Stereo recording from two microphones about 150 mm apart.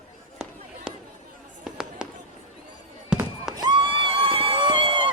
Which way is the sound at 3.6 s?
30° right (ahead or behind).